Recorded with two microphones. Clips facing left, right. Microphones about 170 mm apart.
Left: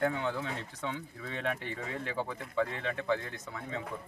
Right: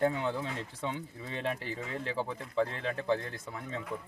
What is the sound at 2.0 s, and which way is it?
A man's voice, 30° right (ahead or behind).